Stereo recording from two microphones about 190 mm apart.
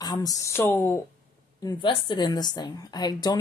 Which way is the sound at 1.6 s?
25° left (ahead or behind).